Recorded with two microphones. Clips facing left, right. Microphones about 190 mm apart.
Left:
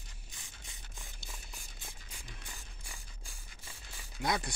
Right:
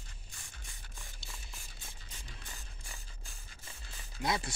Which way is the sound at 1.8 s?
15° left (ahead or behind).